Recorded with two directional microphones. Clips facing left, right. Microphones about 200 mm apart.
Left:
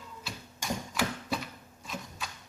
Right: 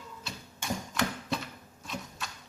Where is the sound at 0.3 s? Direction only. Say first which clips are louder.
Even; centre (ahead or behind).